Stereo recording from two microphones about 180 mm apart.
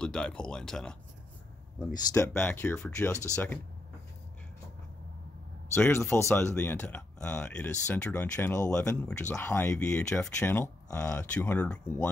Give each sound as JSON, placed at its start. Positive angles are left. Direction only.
{"t": 0.0, "sound": "speech", "side_deg": 5}
{"t": 1.9, "sound": "speech", "side_deg": 20}
{"t": 5.8, "sound": "speech", "side_deg": 10}